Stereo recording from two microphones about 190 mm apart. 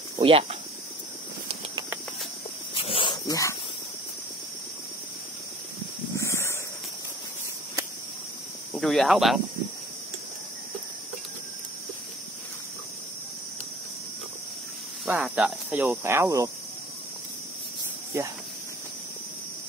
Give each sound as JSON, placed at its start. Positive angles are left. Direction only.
{"t": 0.2, "sound": "speech", "side_deg": -30}
{"t": 2.7, "sound": "dog", "side_deg": 30}
{"t": 6.1, "sound": "a sound", "side_deg": 15}
{"t": 8.7, "sound": "speech", "side_deg": 0}
{"t": 15.0, "sound": "speech", "side_deg": -5}
{"t": 18.1, "sound": "speech", "side_deg": -10}